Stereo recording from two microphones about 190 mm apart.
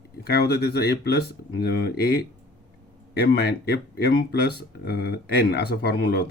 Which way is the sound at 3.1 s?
55° left (ahead or behind).